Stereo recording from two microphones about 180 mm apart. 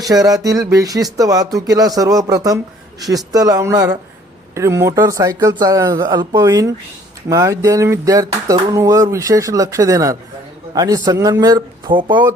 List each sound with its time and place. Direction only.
0.0 s speech: 20° right (ahead or behind)
4.5 s a sound: 15° right (ahead or behind)
10.8 s speech: 20° right (ahead or behind)